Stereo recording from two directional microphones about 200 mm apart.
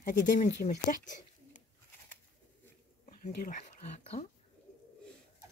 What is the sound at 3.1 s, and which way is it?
Speech, 45° left (ahead or behind).